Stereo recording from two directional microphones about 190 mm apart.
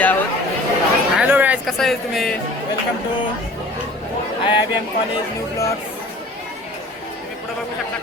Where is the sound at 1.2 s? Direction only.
10° right (ahead or behind).